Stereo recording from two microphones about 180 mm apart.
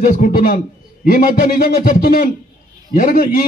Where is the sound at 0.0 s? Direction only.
50° left (ahead or behind).